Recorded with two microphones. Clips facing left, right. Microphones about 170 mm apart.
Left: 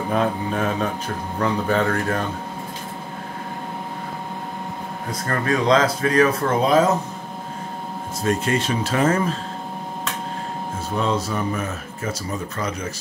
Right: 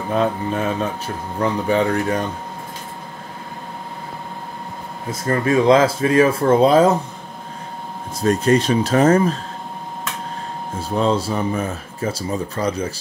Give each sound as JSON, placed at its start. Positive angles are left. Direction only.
{"t": 0.1, "sound": "mantra", "side_deg": 0}
{"t": 0.7, "sound": "speech", "side_deg": -10}
{"t": 5.1, "sound": "speech", "side_deg": -20}
{"t": 8.2, "sound": "speech", "side_deg": -35}
{"t": 11.0, "sound": "speech", "side_deg": -30}